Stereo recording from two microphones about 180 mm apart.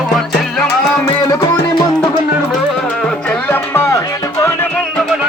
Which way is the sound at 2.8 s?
5° left (ahead or behind).